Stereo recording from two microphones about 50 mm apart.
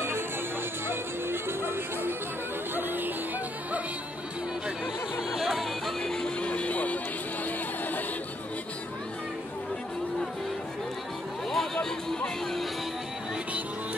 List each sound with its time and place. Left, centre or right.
0.8 s music: right
5.3 s music: centre
6.1 s music: centre
6.5 s music: left
11.5 s a sound: centre